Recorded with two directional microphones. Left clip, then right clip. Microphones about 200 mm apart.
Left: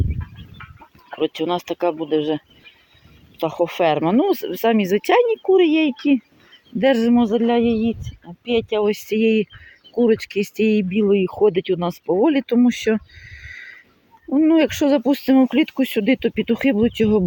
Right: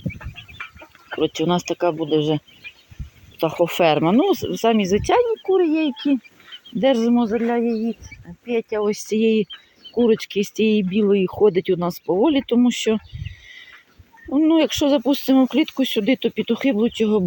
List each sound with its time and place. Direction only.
1.2 s speech: centre (ahead or behind); by 6.0 s 15° left (ahead or behind)
6.7 s speech: 5° left (ahead or behind)
7.3 s a man's voice: 20° left (ahead or behind)
14.3 s speech: 5° left (ahead or behind)